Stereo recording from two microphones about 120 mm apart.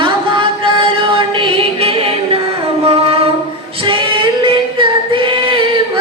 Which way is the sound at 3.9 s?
45° right (ahead or behind).